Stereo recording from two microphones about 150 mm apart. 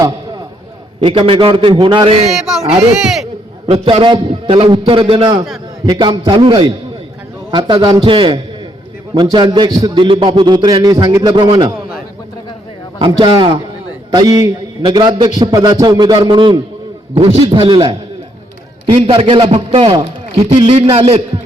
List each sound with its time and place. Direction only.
1.0 s a man's voice: 40° right (ahead or behind)
3.7 s a man's voice: 35° right (ahead or behind)
13.0 s a man's voice: 35° right (ahead or behind)
18.9 s a man's voice: 40° right (ahead or behind)